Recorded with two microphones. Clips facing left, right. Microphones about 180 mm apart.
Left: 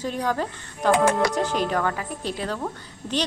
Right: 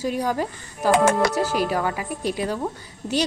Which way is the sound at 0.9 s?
70° right (ahead or behind).